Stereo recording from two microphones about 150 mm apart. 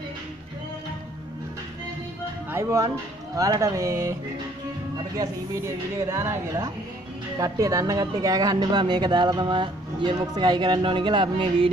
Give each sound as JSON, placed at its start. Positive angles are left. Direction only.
{"t": 2.5, "sound": "speech", "side_deg": -20}